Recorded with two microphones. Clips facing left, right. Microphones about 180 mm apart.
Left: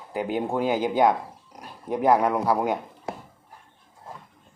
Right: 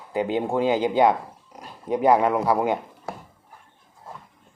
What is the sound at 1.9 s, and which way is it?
Speech, 5° right (ahead or behind).